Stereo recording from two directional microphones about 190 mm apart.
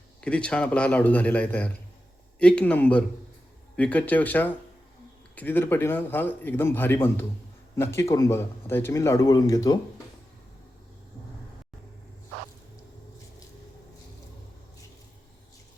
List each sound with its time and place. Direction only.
0.2 s a man's voice: 5° left (ahead or behind)